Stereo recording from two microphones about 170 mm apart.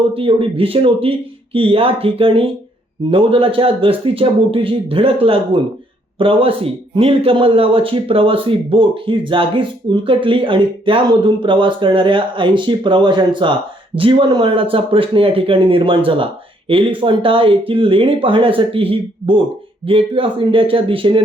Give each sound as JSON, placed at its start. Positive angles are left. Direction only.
{"t": 0.1, "sound": "speech", "side_deg": -30}